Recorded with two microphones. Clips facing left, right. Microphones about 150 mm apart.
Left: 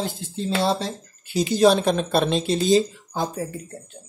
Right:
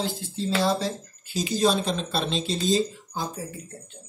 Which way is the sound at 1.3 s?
65° left (ahead or behind).